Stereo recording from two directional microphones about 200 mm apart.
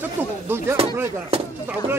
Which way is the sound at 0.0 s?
10° right (ahead or behind).